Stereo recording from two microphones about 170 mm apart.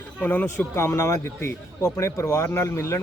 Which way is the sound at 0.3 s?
10° left (ahead or behind).